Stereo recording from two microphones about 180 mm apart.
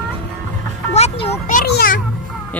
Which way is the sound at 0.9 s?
35° left (ahead or behind).